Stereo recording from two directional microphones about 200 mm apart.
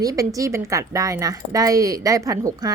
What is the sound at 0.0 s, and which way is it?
A woman's voice, 15° right (ahead or behind).